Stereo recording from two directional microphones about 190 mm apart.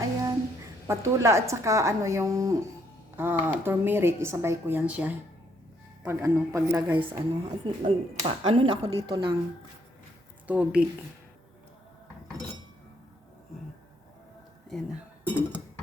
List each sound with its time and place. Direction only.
0.9 s a woman's voice: 15° right (ahead or behind)
6.9 s speech: 25° right (ahead or behind)
10.4 s a woman's voice: 5° right (ahead or behind)
14.7 s speech: centre (ahead or behind)